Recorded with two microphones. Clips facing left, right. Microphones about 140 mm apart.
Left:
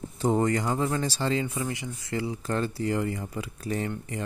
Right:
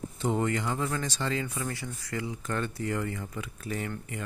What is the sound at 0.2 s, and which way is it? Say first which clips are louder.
Speech: left 4 dB; 40° left (ahead or behind).